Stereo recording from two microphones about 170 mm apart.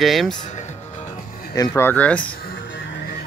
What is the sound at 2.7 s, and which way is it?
Music, 65° left (ahead or behind).